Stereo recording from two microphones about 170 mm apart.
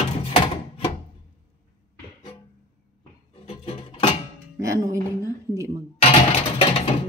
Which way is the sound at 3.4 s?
35° left (ahead or behind).